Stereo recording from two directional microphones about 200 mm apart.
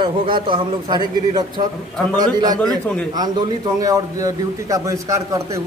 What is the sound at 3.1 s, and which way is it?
A man's voice, 20° right (ahead or behind).